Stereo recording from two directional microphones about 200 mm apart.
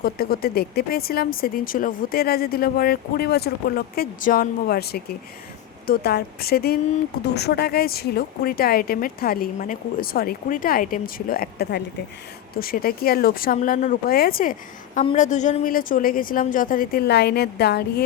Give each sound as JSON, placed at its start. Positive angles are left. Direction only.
{"t": 0.0, "sound": "speech", "side_deg": 50}
{"t": 15.1, "sound": "speech", "side_deg": 35}